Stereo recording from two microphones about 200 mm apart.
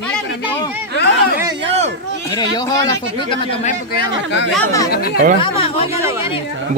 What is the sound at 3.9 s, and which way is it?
Speech, 60° left (ahead or behind).